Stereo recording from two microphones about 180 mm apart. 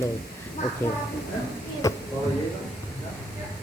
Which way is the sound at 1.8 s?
20° left (ahead or behind).